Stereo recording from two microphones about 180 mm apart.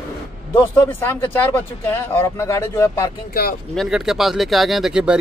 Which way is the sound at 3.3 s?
55° left (ahead or behind).